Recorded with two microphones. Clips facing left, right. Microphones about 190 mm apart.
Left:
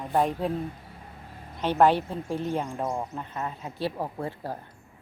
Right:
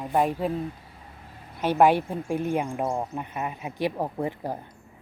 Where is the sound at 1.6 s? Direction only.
10° right (ahead or behind).